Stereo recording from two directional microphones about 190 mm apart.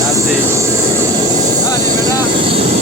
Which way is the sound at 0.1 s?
15° right (ahead or behind).